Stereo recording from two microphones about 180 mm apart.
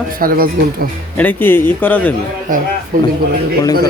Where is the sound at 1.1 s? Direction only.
10° left (ahead or behind).